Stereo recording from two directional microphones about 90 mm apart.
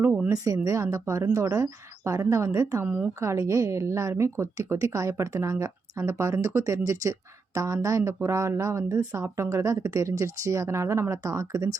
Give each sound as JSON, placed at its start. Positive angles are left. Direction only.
{"t": 0.3, "sound": "a woman's voice", "side_deg": -40}
{"t": 2.8, "sound": "speech", "side_deg": -20}
{"t": 3.2, "sound": "a woman's voice", "side_deg": -35}